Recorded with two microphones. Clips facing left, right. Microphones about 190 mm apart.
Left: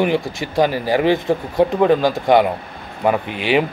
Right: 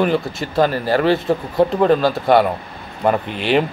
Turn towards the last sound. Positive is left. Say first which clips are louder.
# even
turn(degrees=10)  # may be behind; listen again after turning